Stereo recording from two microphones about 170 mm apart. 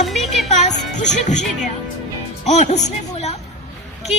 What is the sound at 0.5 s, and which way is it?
Music, 45° left (ahead or behind).